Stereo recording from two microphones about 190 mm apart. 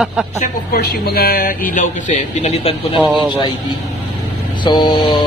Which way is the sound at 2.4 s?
35° left (ahead or behind).